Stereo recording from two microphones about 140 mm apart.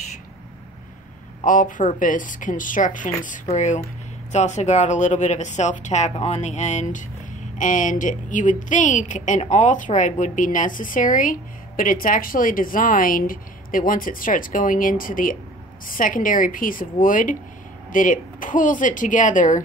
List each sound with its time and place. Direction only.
1.4 s a woman's voice: 70° left (ahead or behind)